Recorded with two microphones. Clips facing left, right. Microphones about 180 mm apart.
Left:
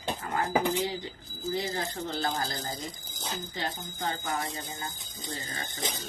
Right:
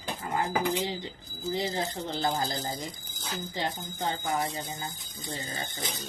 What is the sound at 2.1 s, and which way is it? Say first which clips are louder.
A woman's voice: right 3 dB; 20° right (ahead or behind).